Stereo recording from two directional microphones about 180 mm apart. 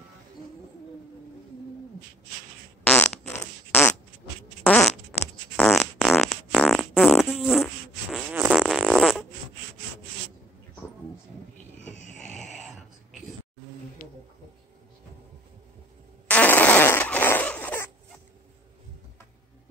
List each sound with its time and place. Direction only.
2.8 s fart: 10° left (ahead or behind)
4.6 s fart: 10° left (ahead or behind)
11.7 s music: 40° right (ahead or behind)
16.3 s fart: 10° left (ahead or behind)